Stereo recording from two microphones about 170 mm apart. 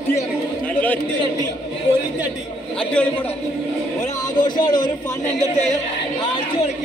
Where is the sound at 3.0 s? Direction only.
10° left (ahead or behind).